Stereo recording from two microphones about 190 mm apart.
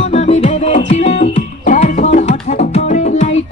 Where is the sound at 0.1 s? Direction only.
35° left (ahead or behind).